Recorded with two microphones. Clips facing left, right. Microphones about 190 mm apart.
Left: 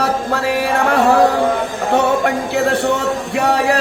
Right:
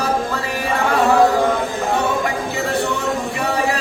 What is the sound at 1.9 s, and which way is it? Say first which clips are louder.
Music: left 8 dB; 70° left (ahead or behind).